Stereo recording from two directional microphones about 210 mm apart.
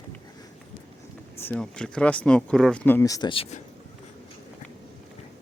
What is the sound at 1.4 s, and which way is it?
Speech, 5° left (ahead or behind).